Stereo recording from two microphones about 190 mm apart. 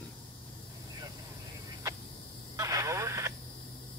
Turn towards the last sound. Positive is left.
turn(degrees=-15)  # may be behind; listen again after turning